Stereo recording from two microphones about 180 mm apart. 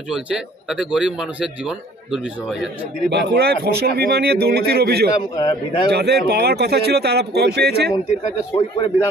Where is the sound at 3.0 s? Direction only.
65° right (ahead or behind).